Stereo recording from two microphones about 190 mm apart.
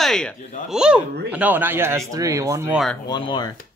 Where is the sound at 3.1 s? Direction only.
25° left (ahead or behind).